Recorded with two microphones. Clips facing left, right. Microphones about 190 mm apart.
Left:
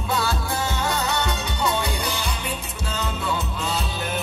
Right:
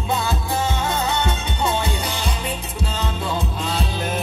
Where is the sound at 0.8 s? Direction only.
25° right (ahead or behind).